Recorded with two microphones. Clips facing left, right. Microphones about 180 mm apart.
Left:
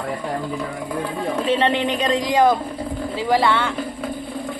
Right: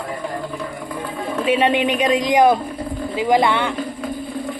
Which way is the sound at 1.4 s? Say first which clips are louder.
Right 3 dB; 10° right (ahead or behind).